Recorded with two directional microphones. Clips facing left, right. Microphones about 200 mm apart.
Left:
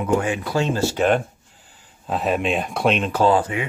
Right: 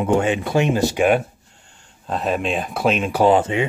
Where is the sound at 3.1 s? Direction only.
20° right (ahead or behind).